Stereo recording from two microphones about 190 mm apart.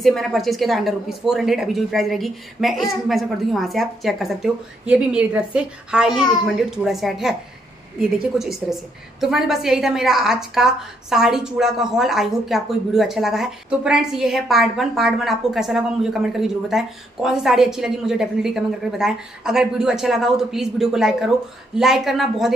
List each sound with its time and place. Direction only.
0.0 s a woman's voice: centre (ahead or behind)